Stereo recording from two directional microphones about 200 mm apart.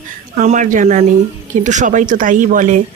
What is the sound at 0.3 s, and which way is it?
Speech, 40° right (ahead or behind).